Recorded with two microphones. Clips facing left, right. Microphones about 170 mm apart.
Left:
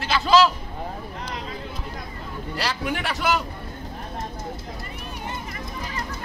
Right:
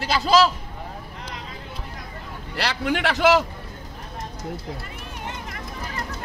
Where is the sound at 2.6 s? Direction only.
70° right (ahead or behind).